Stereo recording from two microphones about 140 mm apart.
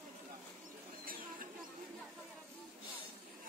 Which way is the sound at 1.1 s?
90° right.